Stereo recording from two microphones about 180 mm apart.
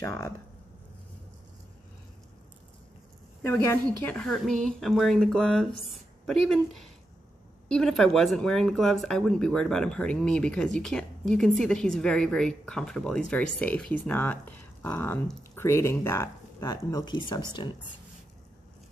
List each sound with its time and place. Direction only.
0.0 s speech: 15° left (ahead or behind)
3.4 s speech: 15° left (ahead or behind)